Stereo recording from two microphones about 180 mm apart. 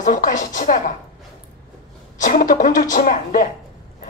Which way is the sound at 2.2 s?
45° left (ahead or behind).